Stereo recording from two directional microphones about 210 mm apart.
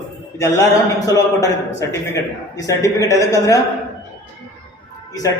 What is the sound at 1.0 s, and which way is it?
A man's voice, 15° left (ahead or behind).